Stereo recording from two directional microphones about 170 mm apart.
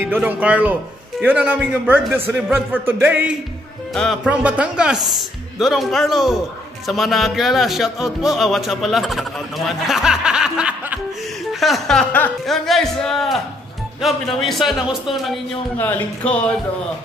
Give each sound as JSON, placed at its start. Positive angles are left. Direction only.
{"t": 0.0, "sound": "a man's voice", "side_deg": -10}
{"t": 3.9, "sound": "speech", "side_deg": 0}
{"t": 15.8, "sound": "speech", "side_deg": 10}